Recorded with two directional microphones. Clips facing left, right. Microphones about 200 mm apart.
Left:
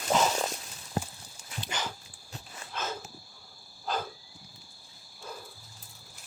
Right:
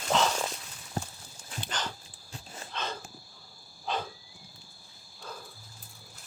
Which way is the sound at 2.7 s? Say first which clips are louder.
Left 1 dB; 5° left (ahead or behind).